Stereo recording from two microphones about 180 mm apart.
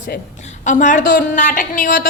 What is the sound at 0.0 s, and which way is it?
A woman's voice, 45° left (ahead or behind).